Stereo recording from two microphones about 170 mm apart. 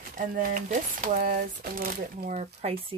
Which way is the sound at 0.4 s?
50° right (ahead or behind).